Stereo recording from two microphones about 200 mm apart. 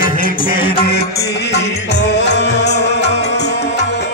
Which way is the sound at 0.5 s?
25° left (ahead or behind).